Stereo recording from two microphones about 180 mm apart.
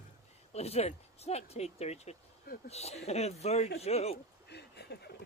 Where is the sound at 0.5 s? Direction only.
35° left (ahead or behind).